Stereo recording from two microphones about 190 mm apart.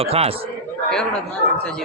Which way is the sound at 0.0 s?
30° right (ahead or behind).